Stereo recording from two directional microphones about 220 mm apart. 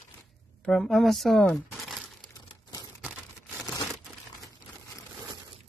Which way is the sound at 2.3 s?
20° left (ahead or behind).